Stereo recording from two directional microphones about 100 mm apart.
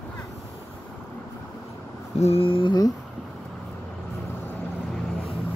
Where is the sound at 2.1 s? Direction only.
85° left; by 2.7 s 65° left (ahead or behind).